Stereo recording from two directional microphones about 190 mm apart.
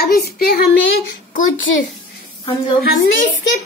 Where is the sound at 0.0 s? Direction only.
55° left (ahead or behind).